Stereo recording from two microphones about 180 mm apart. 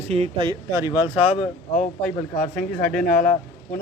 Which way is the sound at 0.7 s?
15° right (ahead or behind).